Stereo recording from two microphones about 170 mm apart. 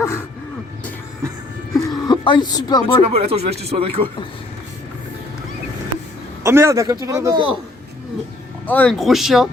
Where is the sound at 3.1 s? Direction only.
35° right (ahead or behind).